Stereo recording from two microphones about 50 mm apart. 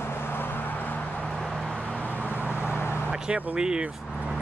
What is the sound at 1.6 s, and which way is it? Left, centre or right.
Vehicle, centre.